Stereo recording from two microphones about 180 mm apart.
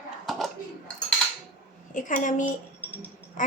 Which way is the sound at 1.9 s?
45° left (ahead or behind).